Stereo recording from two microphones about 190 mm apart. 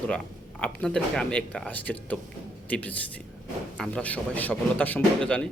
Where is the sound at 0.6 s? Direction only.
5° left (ahead or behind).